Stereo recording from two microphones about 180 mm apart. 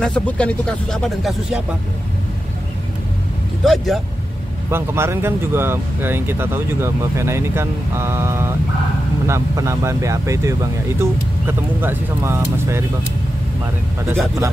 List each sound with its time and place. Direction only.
0.0 s speech: 5° left (ahead or behind)
3.6 s speech: centre (ahead or behind)
4.6 s speech: 15° right (ahead or behind)